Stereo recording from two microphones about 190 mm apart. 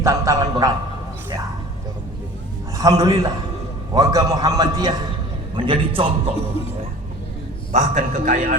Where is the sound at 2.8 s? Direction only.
20° right (ahead or behind).